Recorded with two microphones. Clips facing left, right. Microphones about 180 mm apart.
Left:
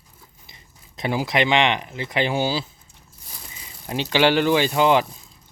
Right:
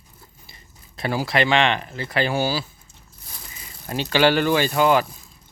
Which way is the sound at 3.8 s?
15° left (ahead or behind).